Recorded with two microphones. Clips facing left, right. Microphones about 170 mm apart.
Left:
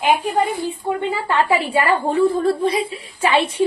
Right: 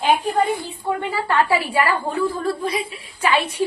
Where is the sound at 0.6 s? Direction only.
20° left (ahead or behind).